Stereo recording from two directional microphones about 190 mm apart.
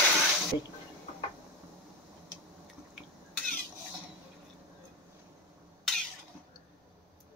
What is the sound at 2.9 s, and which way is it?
Cough, 5° left (ahead or behind).